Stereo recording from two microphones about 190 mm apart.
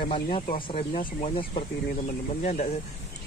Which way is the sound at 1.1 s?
30° left (ahead or behind).